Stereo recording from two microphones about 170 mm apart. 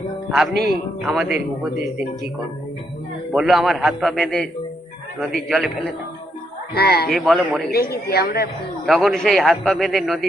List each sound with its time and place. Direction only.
0.3 s speech: centre (ahead or behind)
0.5 s a man's voice: 70° right (ahead or behind)
1.0 s a man's voice: 5° right (ahead or behind)
3.3 s a man's voice: centre (ahead or behind)
6.7 s a woman's voice: 70° left (ahead or behind)
7.1 s a man's voice: centre (ahead or behind)
7.7 s a woman's voice: 65° left (ahead or behind)
8.9 s a man's voice: centre (ahead or behind)